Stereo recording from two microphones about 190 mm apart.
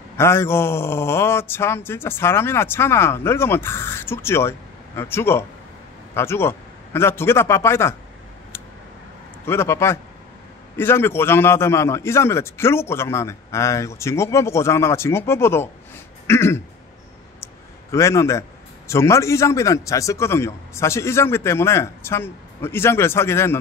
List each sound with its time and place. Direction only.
0.2 s speech: 15° left (ahead or behind)
9.5 s speech: 15° left (ahead or behind)
17.9 s speech: 15° left (ahead or behind)